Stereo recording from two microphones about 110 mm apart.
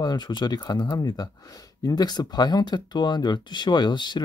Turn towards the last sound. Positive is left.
turn(degrees=45)  # may be behind; listen again after turning